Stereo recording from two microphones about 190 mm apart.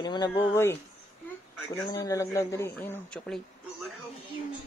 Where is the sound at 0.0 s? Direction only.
20° left (ahead or behind); by 3.4 s 5° left (ahead or behind).